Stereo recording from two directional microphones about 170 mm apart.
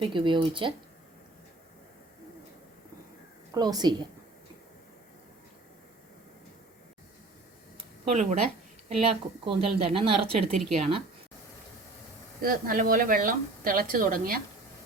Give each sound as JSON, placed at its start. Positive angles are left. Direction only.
{"t": 0.1, "sound": "speech", "side_deg": -30}
{"t": 3.5, "sound": "a woman's voice", "side_deg": -25}
{"t": 8.1, "sound": "speech", "side_deg": -40}
{"t": 12.4, "sound": "a woman's voice", "side_deg": -55}